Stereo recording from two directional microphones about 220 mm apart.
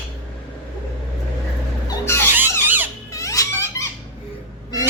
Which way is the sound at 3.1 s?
15° left (ahead or behind).